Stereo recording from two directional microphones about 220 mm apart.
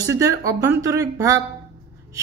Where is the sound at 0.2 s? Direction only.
15° right (ahead or behind).